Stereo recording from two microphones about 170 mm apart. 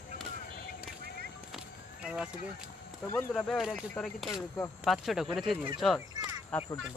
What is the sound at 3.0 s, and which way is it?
Speech, 15° left (ahead or behind).